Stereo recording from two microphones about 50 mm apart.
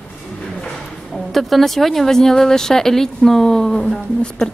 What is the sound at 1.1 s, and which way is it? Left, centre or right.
A woman's voice, centre.